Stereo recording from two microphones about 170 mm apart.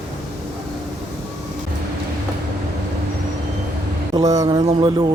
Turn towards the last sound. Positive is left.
turn(degrees=-30)  # may be behind; listen again after turning